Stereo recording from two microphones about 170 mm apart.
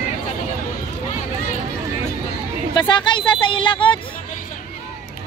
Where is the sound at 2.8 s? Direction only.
25° left (ahead or behind).